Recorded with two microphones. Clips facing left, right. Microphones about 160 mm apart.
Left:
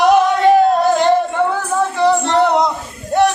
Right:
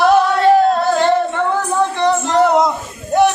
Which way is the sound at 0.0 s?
15° left (ahead or behind).